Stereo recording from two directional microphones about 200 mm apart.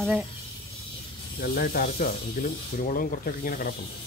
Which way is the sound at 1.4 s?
50° left (ahead or behind).